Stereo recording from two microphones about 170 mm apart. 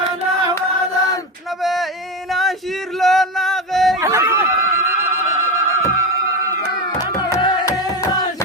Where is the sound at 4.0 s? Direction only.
15° right (ahead or behind).